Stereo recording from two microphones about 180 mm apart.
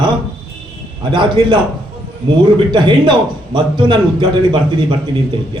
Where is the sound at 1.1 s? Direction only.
25° right (ahead or behind).